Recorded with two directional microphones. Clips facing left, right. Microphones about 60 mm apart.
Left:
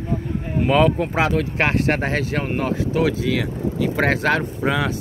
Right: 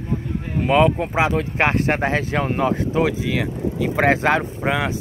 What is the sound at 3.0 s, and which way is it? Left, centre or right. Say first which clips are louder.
Speech: left 1 dB; centre.